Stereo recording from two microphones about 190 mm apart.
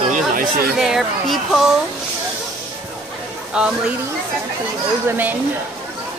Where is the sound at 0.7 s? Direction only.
Centre (ahead or behind).